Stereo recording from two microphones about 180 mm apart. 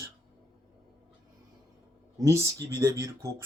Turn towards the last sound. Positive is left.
turn(degrees=-15)  # may be behind; listen again after turning